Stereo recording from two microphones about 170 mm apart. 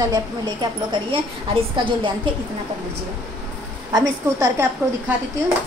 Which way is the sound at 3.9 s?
20° right (ahead or behind).